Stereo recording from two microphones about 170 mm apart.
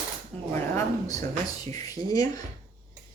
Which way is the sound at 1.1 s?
20° left (ahead or behind).